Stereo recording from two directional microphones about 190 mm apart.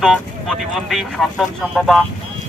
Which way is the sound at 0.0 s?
Centre (ahead or behind).